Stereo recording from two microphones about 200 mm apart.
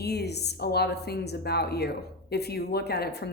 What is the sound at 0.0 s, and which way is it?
A woman's voice, 55° left (ahead or behind).